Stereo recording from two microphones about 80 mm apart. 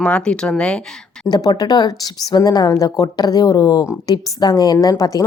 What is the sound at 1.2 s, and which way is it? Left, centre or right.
Speech, left.